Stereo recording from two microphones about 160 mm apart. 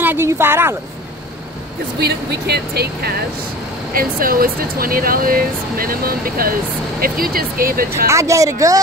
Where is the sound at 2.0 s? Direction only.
90° right.